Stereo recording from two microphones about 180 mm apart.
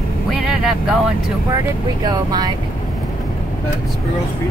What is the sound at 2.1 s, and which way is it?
Speech, 20° right (ahead or behind).